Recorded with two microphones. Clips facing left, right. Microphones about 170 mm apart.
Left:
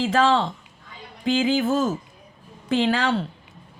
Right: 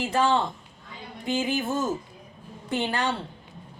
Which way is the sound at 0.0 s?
90° left.